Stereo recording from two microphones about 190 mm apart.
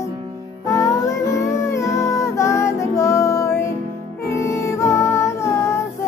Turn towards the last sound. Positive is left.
turn(degrees=15)  # may be behind; listen again after turning